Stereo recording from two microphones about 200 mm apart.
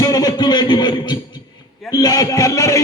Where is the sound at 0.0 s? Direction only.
20° left (ahead or behind).